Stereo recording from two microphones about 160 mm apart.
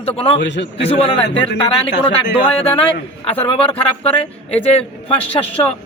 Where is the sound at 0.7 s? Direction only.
40° left (ahead or behind).